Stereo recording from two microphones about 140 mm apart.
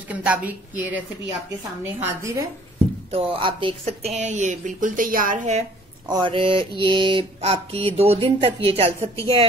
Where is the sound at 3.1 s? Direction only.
40° right (ahead or behind); by 5.7 s 65° right (ahead or behind).